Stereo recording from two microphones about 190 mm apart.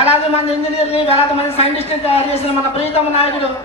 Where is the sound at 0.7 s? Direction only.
30° left (ahead or behind).